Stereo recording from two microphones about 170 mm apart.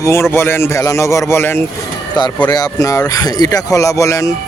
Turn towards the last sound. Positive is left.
turn(degrees=20)  # may be behind; listen again after turning